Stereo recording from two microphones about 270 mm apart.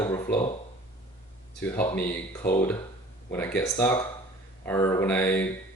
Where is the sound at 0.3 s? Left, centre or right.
Left.